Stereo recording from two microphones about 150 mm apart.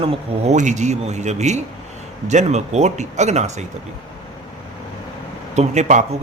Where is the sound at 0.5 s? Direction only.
55° right (ahead or behind).